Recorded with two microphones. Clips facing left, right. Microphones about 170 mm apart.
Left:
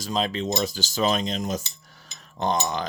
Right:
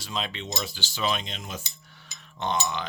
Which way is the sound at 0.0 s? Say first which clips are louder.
Left 8 dB; 40° left (ahead or behind).